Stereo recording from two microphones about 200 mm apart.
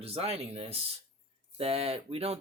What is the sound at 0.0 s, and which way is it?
Speech, 30° right (ahead or behind).